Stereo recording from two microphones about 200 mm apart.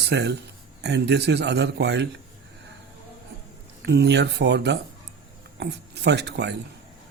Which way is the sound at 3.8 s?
55° right (ahead or behind).